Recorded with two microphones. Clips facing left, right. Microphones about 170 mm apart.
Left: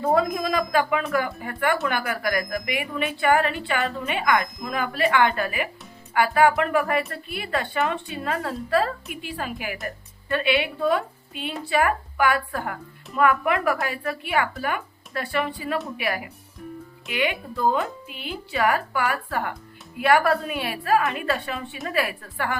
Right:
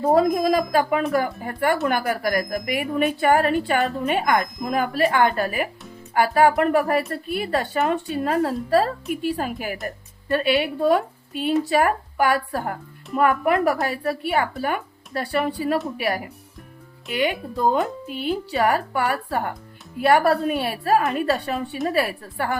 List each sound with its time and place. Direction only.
0.1 s a woman's voice: 40° right (ahead or behind)